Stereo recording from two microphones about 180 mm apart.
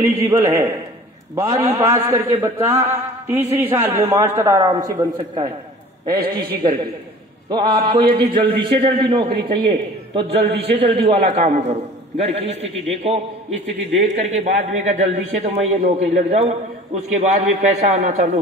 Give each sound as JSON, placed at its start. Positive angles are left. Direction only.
{"t": 0.2, "sound": "a man's voice", "side_deg": -15}